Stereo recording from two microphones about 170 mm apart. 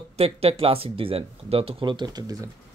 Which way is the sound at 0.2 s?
35° right (ahead or behind).